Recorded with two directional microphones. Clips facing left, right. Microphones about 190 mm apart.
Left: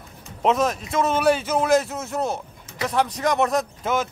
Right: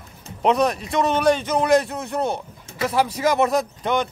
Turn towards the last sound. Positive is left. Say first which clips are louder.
# right 2 dB
turn(degrees=5)  # may be behind; listen again after turning